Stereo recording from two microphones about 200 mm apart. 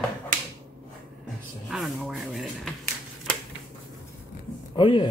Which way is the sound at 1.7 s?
Centre (ahead or behind).